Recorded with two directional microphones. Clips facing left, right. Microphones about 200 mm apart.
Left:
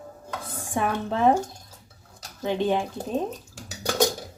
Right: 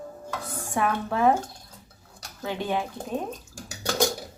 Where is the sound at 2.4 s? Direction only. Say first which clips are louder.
Left 4 dB; 20° left (ahead or behind).